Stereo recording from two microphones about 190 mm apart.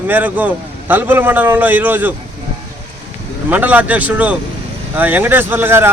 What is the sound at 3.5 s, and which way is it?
Speech, 10° right (ahead or behind).